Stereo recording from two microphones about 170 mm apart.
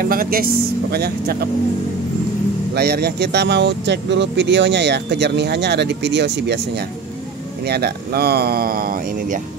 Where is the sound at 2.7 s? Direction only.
70° right (ahead or behind); by 9.4 s 55° right (ahead or behind).